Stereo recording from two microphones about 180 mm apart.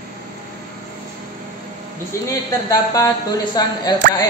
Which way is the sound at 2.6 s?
20° left (ahead or behind).